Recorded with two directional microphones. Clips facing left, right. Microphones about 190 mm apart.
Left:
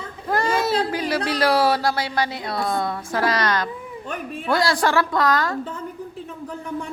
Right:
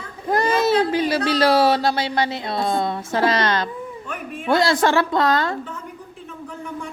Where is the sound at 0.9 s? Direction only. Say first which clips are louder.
Right 4 dB; 25° right (ahead or behind).